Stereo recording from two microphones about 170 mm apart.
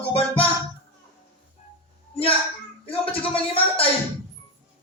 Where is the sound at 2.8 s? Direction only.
35° left (ahead or behind).